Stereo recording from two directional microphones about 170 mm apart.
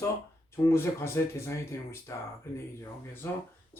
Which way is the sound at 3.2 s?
15° left (ahead or behind).